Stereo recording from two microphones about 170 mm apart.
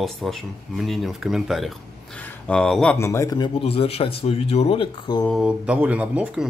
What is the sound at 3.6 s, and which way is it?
Speech, 35° left (ahead or behind).